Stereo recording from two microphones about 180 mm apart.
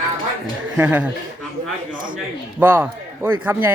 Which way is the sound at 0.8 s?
10° right (ahead or behind).